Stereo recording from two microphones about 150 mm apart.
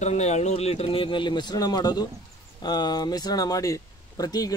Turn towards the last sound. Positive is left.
turn(degrees=25)  # may be behind; listen again after turning